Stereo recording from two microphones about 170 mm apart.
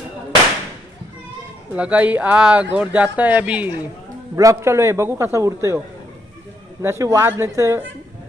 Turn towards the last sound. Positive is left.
turn(degrees=-15)  # may be behind; listen again after turning